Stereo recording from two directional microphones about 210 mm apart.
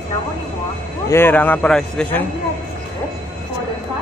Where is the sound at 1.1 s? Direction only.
10° left (ahead or behind).